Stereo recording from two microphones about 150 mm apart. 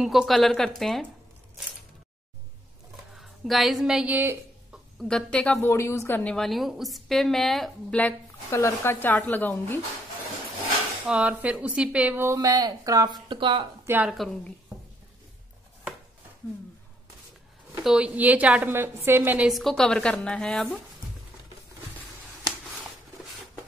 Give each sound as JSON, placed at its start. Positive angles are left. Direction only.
{"t": 0.0, "sound": "a woman's voice", "side_deg": 0}
{"t": 3.2, "sound": "speech", "side_deg": 0}
{"t": 5.0, "sound": "a woman's voice", "side_deg": 5}
{"t": 5.7, "sound": "a woman's voice", "side_deg": 15}
{"t": 8.5, "sound": "speech", "side_deg": 20}
{"t": 11.1, "sound": "speech", "side_deg": -5}
{"t": 13.8, "sound": "speech", "side_deg": -10}
{"t": 14.1, "sound": "a woman's voice", "side_deg": 5}
{"t": 17.8, "sound": "a woman's voice", "side_deg": -5}